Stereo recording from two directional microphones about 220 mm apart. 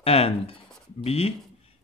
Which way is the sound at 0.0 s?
25° left (ahead or behind).